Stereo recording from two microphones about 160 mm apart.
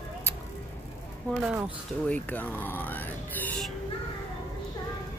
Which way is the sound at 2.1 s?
10° left (ahead or behind).